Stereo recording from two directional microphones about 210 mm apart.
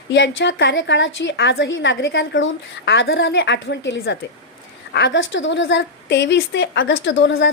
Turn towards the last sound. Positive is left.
turn(degrees=60)  # may be behind; listen again after turning